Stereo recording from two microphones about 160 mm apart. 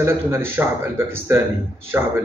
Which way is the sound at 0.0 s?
15° right (ahead or behind).